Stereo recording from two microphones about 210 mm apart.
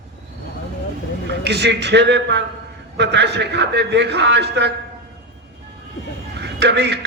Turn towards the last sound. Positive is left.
turn(degrees=-55)  # may be behind; listen again after turning